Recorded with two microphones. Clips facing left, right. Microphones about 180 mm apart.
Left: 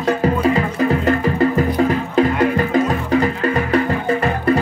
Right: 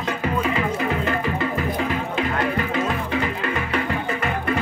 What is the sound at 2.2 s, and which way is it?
Music, 40° left (ahead or behind).